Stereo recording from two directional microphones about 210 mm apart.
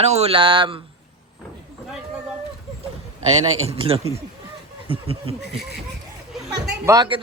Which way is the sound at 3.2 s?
30° right (ahead or behind).